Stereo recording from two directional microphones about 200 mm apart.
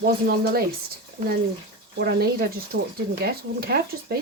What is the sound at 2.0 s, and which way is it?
Speech, 55° right (ahead or behind).